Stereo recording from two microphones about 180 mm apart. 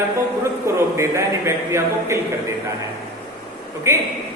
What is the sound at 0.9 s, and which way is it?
A man's voice, 15° right (ahead or behind).